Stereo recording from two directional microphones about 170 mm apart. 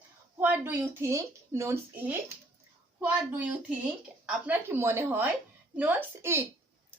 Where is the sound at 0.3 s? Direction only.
10° right (ahead or behind).